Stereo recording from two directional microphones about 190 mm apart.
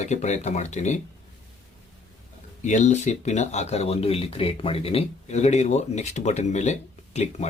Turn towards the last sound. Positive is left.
turn(degrees=35)  # may be behind; listen again after turning